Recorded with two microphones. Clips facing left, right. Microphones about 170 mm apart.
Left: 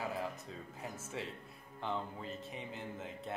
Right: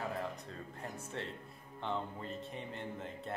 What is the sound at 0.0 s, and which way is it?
Speech, centre (ahead or behind).